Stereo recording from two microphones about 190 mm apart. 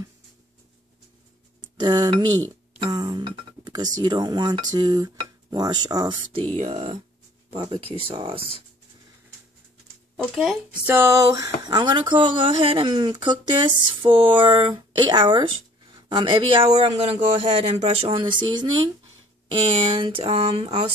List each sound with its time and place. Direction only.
1.6 s speech: 25° right (ahead or behind)
6.5 s speech: 35° right (ahead or behind)
10.1 s speech: centre (ahead or behind)
10.9 s speech: 15° right (ahead or behind); by 20.9 s 30° right (ahead or behind)